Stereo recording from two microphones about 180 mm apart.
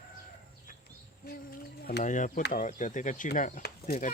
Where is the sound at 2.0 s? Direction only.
45° left (ahead or behind).